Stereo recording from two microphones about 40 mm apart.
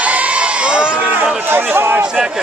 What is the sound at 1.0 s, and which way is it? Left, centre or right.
Run, right.